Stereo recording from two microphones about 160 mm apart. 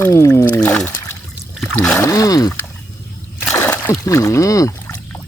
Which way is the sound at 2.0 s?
20° left (ahead or behind).